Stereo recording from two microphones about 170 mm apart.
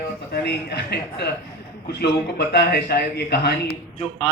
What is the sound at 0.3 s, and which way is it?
A man's voice, 70° left (ahead or behind).